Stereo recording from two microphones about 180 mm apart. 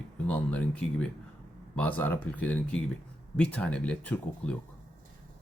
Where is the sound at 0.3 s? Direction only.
5° left (ahead or behind).